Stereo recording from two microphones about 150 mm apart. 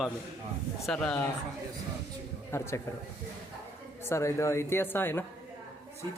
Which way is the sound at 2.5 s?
15° left (ahead or behind).